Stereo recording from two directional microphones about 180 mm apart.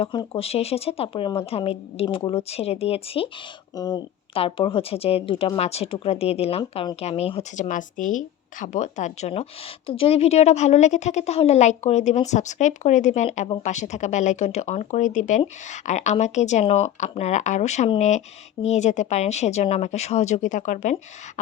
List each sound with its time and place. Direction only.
0.0 s speech: 30° left (ahead or behind)
3.8 s speech: 25° left (ahead or behind); by 20.9 s 45° left (ahead or behind)